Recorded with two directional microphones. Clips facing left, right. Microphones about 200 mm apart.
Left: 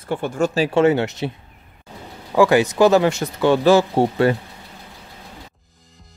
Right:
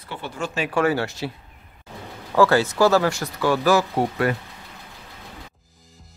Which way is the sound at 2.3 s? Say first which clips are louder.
Left 3 dB; 15° left (ahead or behind).